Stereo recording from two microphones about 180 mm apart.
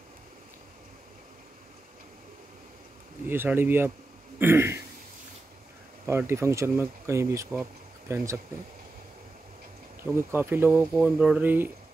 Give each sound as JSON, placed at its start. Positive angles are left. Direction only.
{"t": 3.3, "sound": "speech", "side_deg": -10}
{"t": 6.0, "sound": "speech", "side_deg": -15}
{"t": 10.1, "sound": "speech", "side_deg": -15}